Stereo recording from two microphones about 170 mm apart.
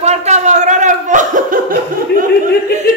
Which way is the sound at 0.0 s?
40° right (ahead or behind).